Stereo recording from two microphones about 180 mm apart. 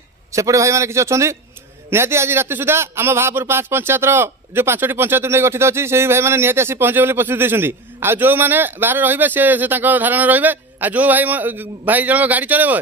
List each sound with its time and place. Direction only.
0.3 s a man's voice: 15° right (ahead or behind)